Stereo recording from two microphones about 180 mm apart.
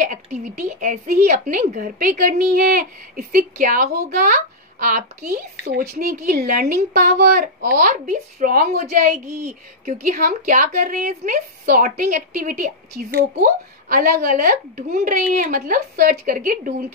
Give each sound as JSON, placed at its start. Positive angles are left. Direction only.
{"t": 0.0, "sound": "a woman's voice", "side_deg": -45}
{"t": 5.6, "sound": "a woman's voice", "side_deg": -60}